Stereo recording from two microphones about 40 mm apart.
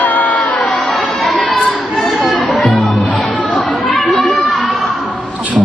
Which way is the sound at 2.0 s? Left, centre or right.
Centre.